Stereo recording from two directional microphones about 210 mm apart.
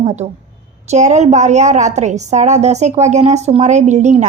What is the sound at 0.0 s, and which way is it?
A woman's voice, 30° right (ahead or behind).